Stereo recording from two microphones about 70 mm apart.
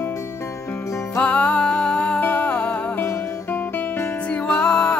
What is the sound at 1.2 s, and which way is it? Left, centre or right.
Music, centre.